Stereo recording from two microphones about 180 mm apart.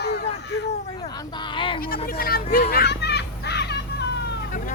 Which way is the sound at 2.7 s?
65° left (ahead or behind).